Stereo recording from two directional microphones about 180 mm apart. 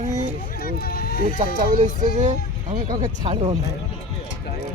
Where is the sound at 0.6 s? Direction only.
55° left (ahead or behind).